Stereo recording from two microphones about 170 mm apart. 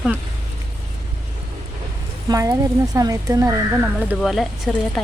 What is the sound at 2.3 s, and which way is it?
Speech, 20° right (ahead or behind).